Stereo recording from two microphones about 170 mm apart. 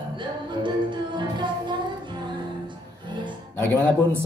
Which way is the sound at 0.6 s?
25° right (ahead or behind).